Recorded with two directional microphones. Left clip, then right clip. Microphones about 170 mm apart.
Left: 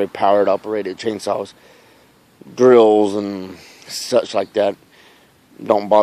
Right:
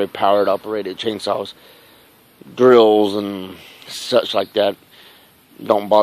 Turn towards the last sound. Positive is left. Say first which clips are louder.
# even
turn(degrees=10)  # may be behind; listen again after turning